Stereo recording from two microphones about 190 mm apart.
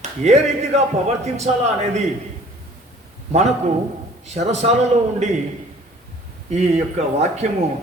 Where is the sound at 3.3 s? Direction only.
35° right (ahead or behind).